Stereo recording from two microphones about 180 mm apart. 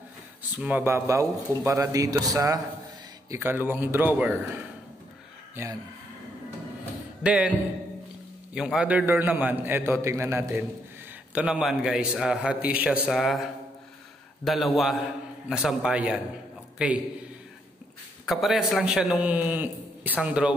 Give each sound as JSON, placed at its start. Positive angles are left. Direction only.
{"t": 0.4, "sound": "a man's voice", "side_deg": -10}
{"t": 7.2, "sound": "a man's voice", "side_deg": -5}
{"t": 8.5, "sound": "a man's voice", "side_deg": -5}
{"t": 18.2, "sound": "a man's voice", "side_deg": 0}